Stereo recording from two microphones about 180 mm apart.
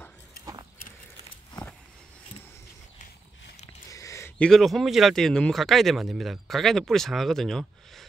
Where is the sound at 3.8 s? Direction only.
15° left (ahead or behind).